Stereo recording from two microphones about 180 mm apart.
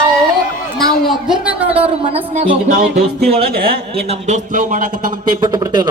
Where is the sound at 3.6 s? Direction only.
35° right (ahead or behind).